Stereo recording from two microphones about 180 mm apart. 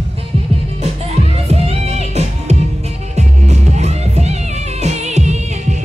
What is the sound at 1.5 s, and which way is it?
Music, 35° right (ahead or behind).